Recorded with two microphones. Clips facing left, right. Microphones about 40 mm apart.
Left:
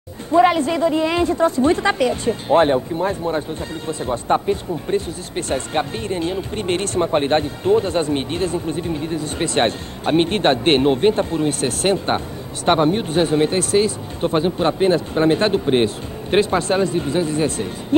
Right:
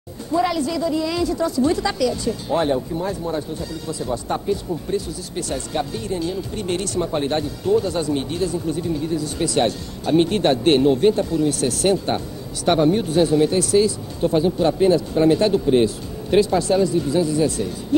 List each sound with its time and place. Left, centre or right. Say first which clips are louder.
0.3 s a woman's voice: left 6 dB; left